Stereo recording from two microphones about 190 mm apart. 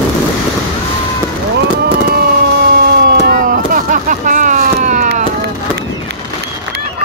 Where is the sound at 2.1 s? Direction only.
55° right (ahead or behind).